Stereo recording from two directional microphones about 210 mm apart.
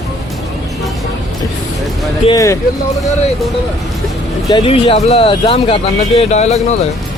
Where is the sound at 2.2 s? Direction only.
15° left (ahead or behind).